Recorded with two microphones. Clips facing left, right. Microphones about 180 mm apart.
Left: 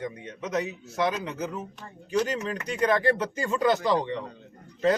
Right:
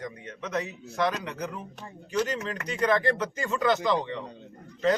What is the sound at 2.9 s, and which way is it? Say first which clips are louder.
Speech: left 1 dB; 30° left (ahead or behind).